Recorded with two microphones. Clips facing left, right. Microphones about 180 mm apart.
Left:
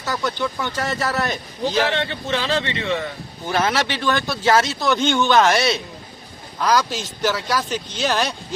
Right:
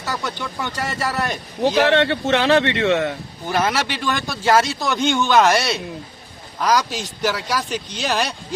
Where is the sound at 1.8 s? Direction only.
65° right (ahead or behind).